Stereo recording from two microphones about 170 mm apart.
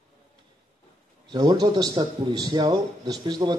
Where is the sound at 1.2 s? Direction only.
20° right (ahead or behind).